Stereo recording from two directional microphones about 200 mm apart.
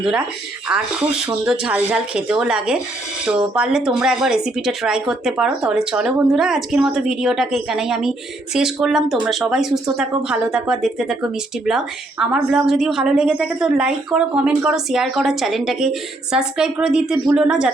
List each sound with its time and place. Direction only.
0.0 s a woman's voice: 5° right (ahead or behind)